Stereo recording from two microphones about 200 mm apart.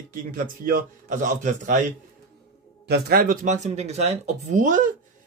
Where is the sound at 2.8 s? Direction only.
55° right (ahead or behind).